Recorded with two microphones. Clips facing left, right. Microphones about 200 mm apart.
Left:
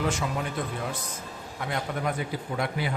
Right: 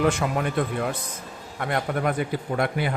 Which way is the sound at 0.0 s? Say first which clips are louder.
Right 6 dB; 60° right (ahead or behind).